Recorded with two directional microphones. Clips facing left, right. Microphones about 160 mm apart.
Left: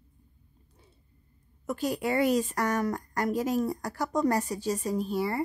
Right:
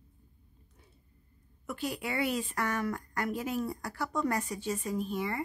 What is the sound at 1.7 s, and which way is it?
A woman's voice, 40° left (ahead or behind).